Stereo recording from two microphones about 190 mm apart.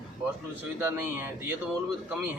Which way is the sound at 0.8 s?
10° right (ahead or behind).